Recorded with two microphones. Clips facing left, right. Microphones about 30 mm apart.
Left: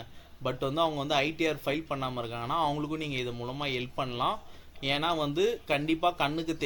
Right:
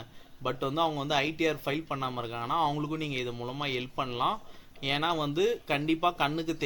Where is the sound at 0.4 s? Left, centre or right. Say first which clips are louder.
Even; centre.